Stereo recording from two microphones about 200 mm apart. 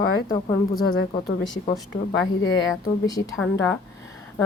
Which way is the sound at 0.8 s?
65° left (ahead or behind).